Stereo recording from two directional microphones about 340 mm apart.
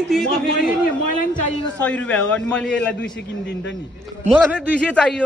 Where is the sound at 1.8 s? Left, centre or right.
Centre.